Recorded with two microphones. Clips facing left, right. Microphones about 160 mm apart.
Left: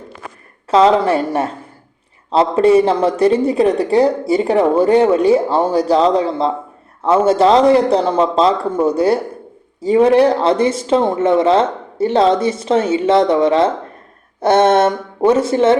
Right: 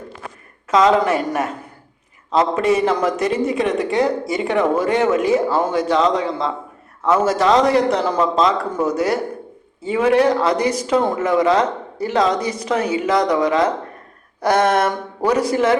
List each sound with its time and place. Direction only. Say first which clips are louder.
0.7 s a man's voice: left 3 dB; 30° left (ahead or behind)